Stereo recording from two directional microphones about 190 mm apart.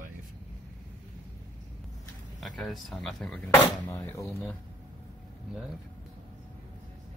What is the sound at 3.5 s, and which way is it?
Speech, 15° left (ahead or behind).